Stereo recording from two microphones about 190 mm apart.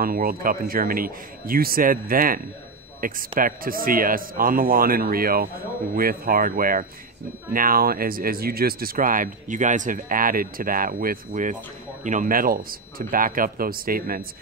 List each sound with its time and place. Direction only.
0.0 s speech: 50° right (ahead or behind)